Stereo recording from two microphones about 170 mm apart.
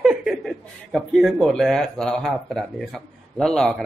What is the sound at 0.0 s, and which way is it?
A man's voice, 5° right (ahead or behind).